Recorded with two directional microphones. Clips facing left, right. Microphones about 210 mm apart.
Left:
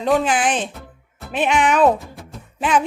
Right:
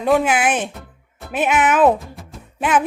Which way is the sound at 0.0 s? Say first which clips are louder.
Right 1 dB; 5° right (ahead or behind).